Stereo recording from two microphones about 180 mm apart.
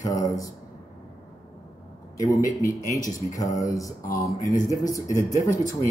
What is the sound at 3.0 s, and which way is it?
Speech, 20° left (ahead or behind).